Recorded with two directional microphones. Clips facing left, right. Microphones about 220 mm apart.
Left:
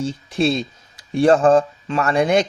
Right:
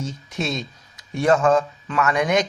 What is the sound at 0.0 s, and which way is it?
Speech, 30° left (ahead or behind).